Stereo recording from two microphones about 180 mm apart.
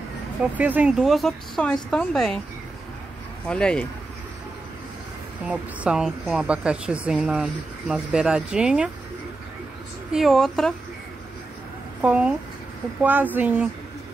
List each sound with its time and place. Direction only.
0.4 s speech: 10° right (ahead or behind)
3.4 s speech: 5° left (ahead or behind)
5.5 s speech: 5° right (ahead or behind)
10.1 s speech: centre (ahead or behind)
12.0 s speech: 5° right (ahead or behind)